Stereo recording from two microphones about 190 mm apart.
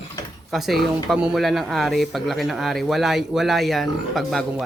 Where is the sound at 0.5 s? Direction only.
Centre (ahead or behind).